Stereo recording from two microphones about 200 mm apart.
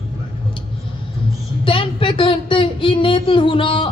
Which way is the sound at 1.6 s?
25° left (ahead or behind).